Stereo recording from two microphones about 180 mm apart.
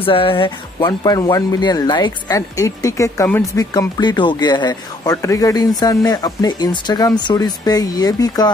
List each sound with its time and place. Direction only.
0.0 s speech: 30° left (ahead or behind)